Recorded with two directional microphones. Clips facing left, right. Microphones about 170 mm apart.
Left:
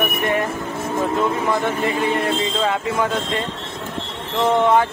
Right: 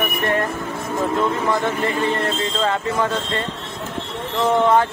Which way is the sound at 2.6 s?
5° left (ahead or behind).